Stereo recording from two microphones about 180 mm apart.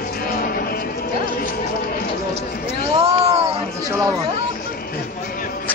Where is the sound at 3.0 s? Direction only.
35° right (ahead or behind).